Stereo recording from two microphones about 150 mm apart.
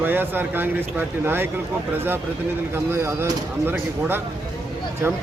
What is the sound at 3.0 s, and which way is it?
Speech, 15° right (ahead or behind).